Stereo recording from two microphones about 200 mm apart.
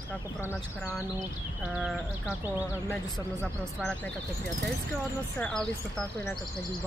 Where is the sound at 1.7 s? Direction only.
Centre (ahead or behind).